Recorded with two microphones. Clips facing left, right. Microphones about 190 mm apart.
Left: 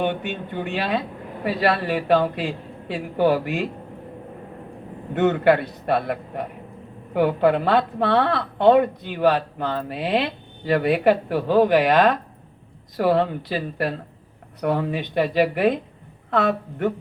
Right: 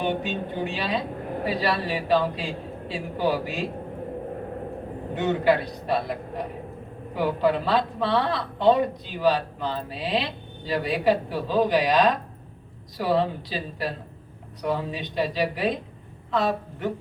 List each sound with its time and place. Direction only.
0.0 s a woman's voice: 60° left (ahead or behind)
5.1 s a woman's voice: 60° left (ahead or behind)